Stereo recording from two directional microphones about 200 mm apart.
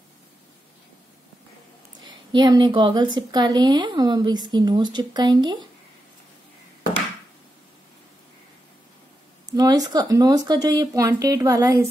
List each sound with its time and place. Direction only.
2.0 s a woman's voice: 20° right (ahead or behind)
9.5 s speech: 20° right (ahead or behind)